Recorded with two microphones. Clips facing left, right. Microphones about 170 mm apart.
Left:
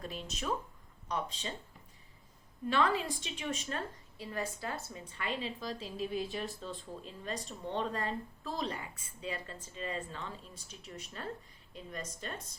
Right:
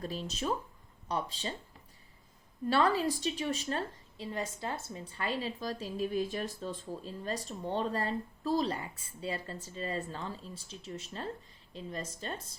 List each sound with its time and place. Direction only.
0.0 s a woman's voice: 35° right (ahead or behind)
2.6 s a woman's voice: 35° right (ahead or behind)
5.2 s a woman's voice: 40° right (ahead or behind)